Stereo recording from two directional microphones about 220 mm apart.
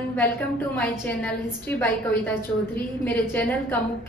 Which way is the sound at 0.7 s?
5° left (ahead or behind).